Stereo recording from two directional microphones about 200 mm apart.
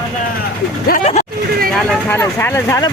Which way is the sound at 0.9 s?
40° left (ahead or behind).